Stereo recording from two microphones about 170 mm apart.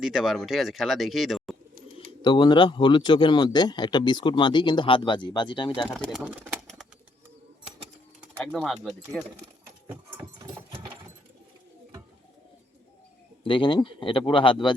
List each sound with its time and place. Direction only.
0.0 s speech: 5° right (ahead or behind)
2.2 s speech: 30° left (ahead or behind)
6.0 s speech: centre (ahead or behind)
8.5 s speech: centre (ahead or behind)
13.4 s speech: 30° left (ahead or behind)